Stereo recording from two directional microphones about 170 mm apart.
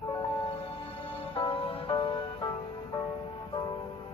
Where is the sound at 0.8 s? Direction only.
30° left (ahead or behind).